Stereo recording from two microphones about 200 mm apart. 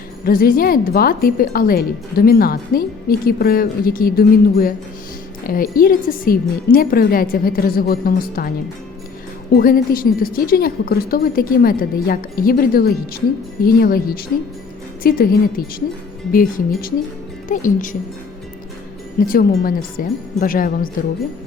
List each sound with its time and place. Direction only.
0.3 s a woman's voice: 45° left (ahead or behind)
19.2 s a woman's voice: 45° left (ahead or behind)